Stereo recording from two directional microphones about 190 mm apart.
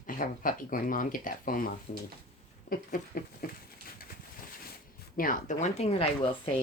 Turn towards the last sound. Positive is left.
turn(degrees=30)  # may be behind; listen again after turning